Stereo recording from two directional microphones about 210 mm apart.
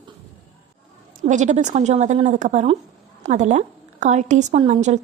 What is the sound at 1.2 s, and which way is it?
A woman's voice, 35° right (ahead or behind).